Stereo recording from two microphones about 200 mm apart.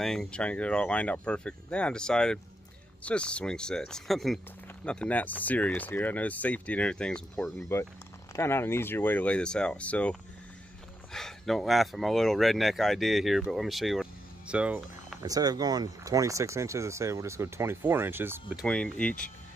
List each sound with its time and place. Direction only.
0.0 s speech: centre (ahead or behind)
15.2 s speech: 20° right (ahead or behind)
18.7 s speech: 5° left (ahead or behind)